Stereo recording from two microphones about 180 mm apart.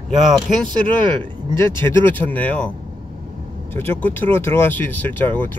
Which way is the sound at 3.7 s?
10° left (ahead or behind).